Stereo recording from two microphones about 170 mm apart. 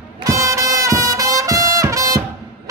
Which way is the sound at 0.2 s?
20° right (ahead or behind).